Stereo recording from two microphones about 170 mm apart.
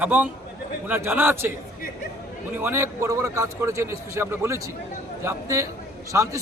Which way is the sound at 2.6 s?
15° right (ahead or behind).